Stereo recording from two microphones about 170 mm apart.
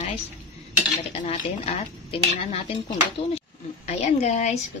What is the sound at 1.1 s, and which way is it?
A woman's voice, 40° left (ahead or behind).